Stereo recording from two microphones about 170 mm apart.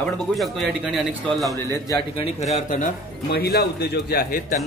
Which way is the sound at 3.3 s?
70° left (ahead or behind).